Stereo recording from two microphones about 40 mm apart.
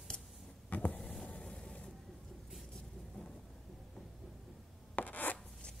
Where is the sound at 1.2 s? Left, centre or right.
Left.